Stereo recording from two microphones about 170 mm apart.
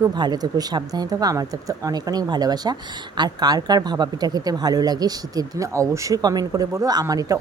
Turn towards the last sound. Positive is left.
turn(degrees=-20)  # may be behind; listen again after turning